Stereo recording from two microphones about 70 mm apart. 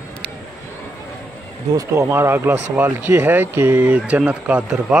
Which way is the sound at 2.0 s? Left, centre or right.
Right.